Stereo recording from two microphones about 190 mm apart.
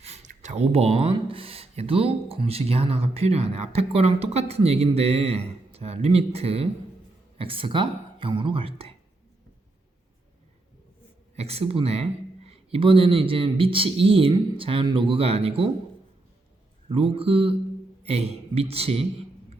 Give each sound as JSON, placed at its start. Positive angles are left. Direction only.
{"t": 0.0, "sound": "speech", "side_deg": -35}
{"t": 11.3, "sound": "speech", "side_deg": -35}
{"t": 16.9, "sound": "a man's voice", "side_deg": -30}